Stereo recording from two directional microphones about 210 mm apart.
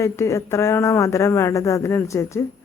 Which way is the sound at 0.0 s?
15° left (ahead or behind).